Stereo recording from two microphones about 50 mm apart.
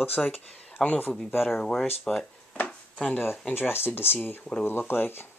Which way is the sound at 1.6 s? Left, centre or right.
Centre.